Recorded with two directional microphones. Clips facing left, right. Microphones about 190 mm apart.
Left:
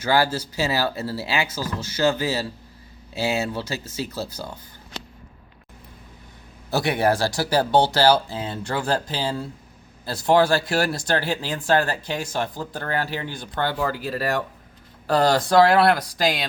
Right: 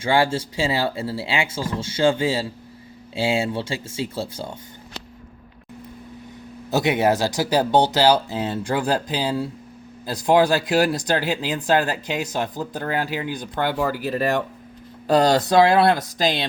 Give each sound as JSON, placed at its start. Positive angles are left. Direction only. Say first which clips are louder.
{"t": 0.0, "sound": "speech", "louder": "right 1 dB", "side_deg": -25}
{"t": 6.7, "sound": "speech", "louder": "right 2 dB", "side_deg": -20}